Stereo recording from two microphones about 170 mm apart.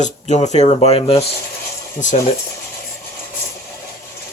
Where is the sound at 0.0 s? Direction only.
45° left (ahead or behind).